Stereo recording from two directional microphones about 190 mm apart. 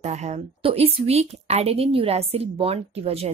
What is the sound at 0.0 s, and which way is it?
A woman's voice, 35° right (ahead or behind).